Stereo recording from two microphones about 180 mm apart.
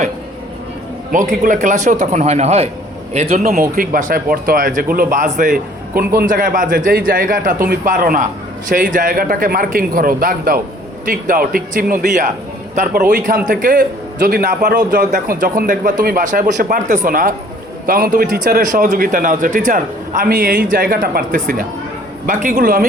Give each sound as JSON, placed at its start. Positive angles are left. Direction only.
{"t": 1.1, "sound": "a man's voice", "side_deg": -45}
{"t": 3.4, "sound": "a man's voice", "side_deg": -50}